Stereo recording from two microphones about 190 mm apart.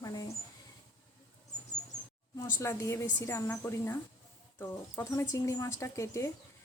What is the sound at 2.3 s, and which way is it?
Speech, 15° left (ahead or behind).